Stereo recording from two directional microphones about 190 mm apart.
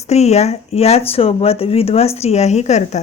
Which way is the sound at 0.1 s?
35° left (ahead or behind).